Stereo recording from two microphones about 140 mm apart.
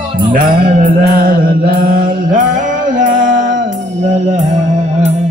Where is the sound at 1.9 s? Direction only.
70° right (ahead or behind).